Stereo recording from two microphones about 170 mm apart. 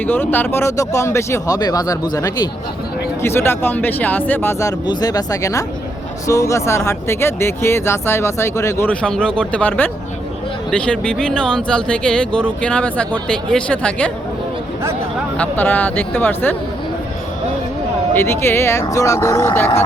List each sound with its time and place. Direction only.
0.0 s speech: 10° left (ahead or behind)
15.4 s speech: 10° left (ahead or behind)
18.1 s speech: 15° left (ahead or behind)